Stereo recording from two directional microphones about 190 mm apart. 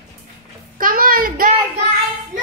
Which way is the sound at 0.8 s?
45° right (ahead or behind).